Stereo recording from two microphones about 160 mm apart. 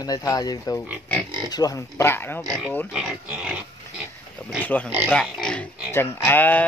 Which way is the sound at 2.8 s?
5° right (ahead or behind).